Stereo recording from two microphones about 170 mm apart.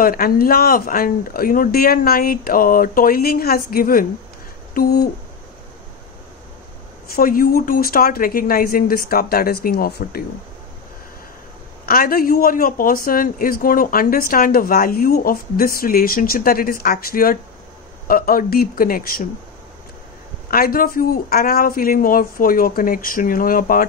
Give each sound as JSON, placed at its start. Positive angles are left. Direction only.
{"t": 0.0, "sound": "speech", "side_deg": 60}
{"t": 7.2, "sound": "speech", "side_deg": 60}
{"t": 11.8, "sound": "speech", "side_deg": 60}
{"t": 20.4, "sound": "speech", "side_deg": 60}